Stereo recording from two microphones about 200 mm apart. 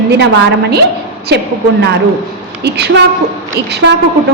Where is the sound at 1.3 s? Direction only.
55° right (ahead or behind).